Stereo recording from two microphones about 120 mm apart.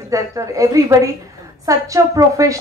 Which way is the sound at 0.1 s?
30° right (ahead or behind).